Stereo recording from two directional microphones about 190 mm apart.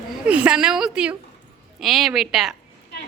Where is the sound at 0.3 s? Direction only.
5° right (ahead or behind).